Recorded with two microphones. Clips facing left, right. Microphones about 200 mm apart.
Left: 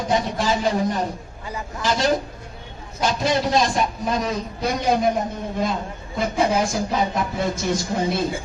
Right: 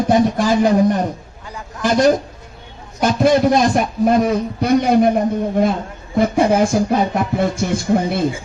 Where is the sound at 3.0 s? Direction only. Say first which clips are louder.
Right 8 dB; 55° right (ahead or behind).